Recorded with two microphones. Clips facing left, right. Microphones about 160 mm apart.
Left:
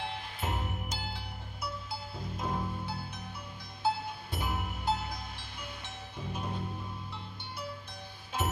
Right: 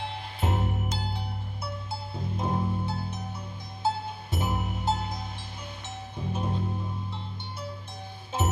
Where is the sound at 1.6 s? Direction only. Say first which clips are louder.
Right 1 dB; 25° right (ahead or behind).